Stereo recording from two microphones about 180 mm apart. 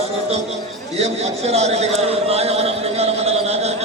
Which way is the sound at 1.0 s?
35° right (ahead or behind).